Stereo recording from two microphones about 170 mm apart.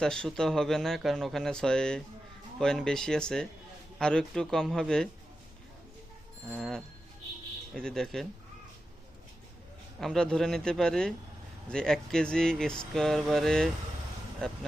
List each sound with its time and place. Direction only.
0.0 s speech: 5° left (ahead or behind)
6.5 s speech: centre (ahead or behind)
10.0 s speech: 5° left (ahead or behind)